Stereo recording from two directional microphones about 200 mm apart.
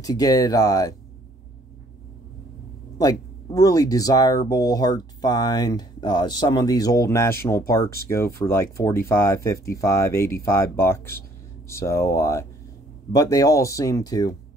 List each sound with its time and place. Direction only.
0.0 s speech: 15° left (ahead or behind)
3.0 s speech: 20° left (ahead or behind)